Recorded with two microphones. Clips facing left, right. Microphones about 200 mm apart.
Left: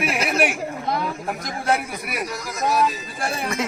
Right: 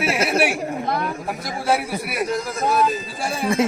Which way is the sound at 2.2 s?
30° right (ahead or behind).